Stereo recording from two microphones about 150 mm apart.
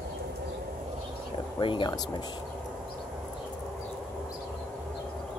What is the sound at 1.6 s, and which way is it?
Speech, 35° left (ahead or behind).